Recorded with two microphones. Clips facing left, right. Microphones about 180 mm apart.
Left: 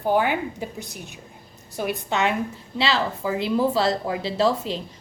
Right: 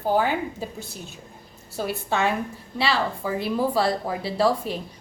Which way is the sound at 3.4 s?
25° left (ahead or behind).